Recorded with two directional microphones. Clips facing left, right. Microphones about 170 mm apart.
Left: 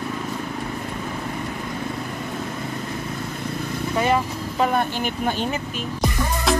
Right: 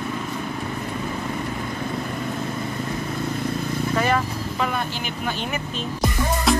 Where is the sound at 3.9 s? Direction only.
20° left (ahead or behind).